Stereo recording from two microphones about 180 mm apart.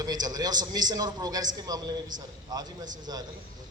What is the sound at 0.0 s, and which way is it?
A man's voice, 20° right (ahead or behind).